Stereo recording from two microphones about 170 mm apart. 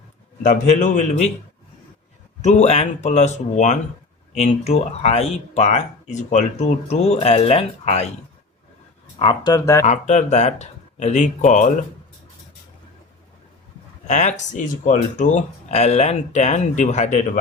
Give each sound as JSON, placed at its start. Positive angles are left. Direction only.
{"t": 0.4, "sound": "speech", "side_deg": 50}
{"t": 2.4, "sound": "speech", "side_deg": 40}
{"t": 9.1, "sound": "speech", "side_deg": 30}
{"t": 9.8, "sound": "speech", "side_deg": 45}
{"t": 14.1, "sound": "speech", "side_deg": 45}